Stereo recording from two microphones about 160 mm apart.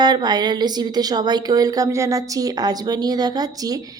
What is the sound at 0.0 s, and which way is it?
A woman's voice, 25° right (ahead or behind).